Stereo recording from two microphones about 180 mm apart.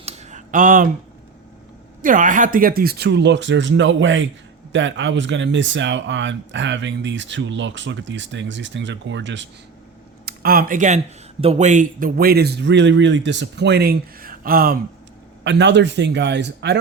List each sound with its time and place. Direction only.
0.0 s a sound: 35° right (ahead or behind)
2.0 s speech: 50° right (ahead or behind); by 9.5 s 85° right
10.2 s speech: 55° right (ahead or behind)
15.4 s speech: 75° right (ahead or behind)